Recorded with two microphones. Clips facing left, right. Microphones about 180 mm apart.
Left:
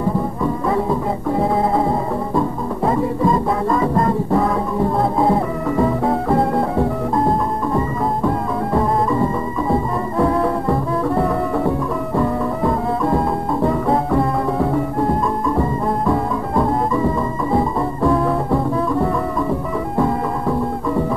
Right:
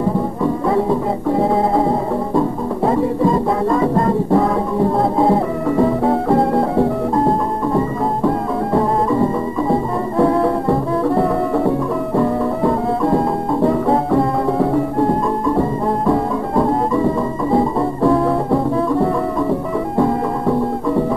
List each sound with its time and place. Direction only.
0.4 s music: 30° right (ahead or behind)
16.1 s music: 30° right (ahead or behind)